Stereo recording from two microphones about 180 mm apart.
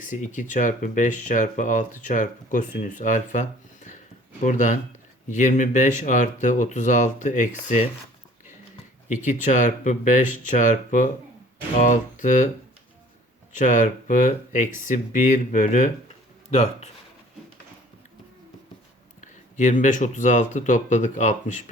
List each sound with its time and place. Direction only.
0.0 s speech: 45° left (ahead or behind)
9.2 s speech: 45° left (ahead or behind)
13.5 s speech: 45° left (ahead or behind)
19.2 s speech: 45° left (ahead or behind)